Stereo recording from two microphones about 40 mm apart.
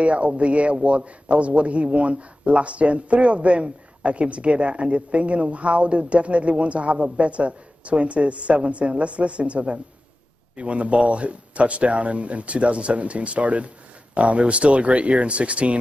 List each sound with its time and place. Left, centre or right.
0.0 s a man's voice: right